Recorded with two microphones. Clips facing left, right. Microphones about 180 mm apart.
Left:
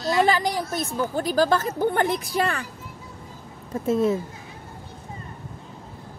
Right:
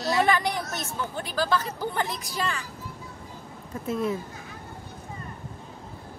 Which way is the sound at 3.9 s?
25° left (ahead or behind).